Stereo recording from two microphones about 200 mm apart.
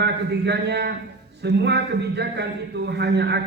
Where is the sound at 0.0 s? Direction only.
55° right (ahead or behind).